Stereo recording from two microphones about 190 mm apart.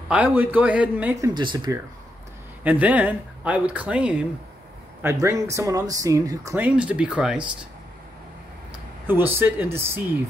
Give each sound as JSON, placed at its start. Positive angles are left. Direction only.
{"t": 0.1, "sound": "speech", "side_deg": -10}
{"t": 1.3, "sound": "speech", "side_deg": -25}
{"t": 2.6, "sound": "speech", "side_deg": -10}
{"t": 9.0, "sound": "speech", "side_deg": -10}